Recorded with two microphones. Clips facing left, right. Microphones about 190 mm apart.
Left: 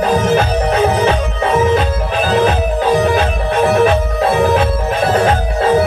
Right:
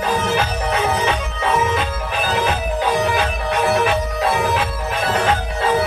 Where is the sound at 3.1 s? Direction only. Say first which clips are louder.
Left 5 dB; 45° left (ahead or behind).